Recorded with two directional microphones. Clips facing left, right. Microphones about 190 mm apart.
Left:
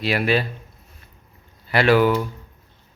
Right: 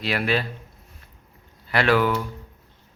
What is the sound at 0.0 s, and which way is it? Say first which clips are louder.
Speech: left 3 dB; 5° left (ahead or behind).